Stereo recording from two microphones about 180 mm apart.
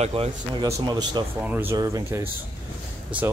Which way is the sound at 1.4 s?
10° right (ahead or behind).